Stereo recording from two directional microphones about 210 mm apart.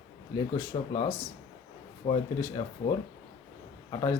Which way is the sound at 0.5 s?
20° left (ahead or behind).